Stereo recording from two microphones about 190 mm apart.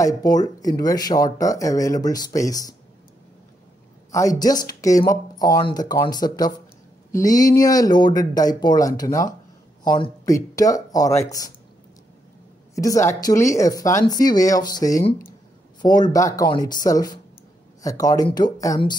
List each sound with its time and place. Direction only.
0.0 s speech: 20° left (ahead or behind)
4.1 s a woman's voice: 15° left (ahead or behind)
12.7 s a woman's voice: 15° left (ahead or behind)